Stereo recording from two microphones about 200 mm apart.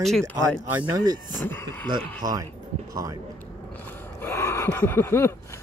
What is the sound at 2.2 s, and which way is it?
Speech, 20° right (ahead or behind).